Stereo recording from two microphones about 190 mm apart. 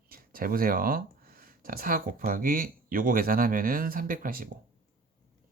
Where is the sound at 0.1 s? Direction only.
50° right (ahead or behind).